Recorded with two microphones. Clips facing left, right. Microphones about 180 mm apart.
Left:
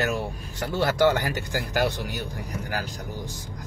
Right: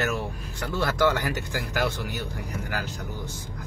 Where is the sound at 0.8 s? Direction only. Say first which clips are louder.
Left 3 dB; 35° left (ahead or behind).